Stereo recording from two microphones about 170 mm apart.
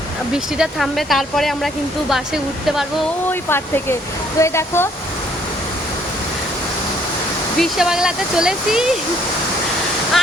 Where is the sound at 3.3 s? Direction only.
15° left (ahead or behind).